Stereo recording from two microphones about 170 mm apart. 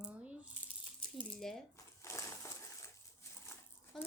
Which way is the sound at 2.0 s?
15° left (ahead or behind).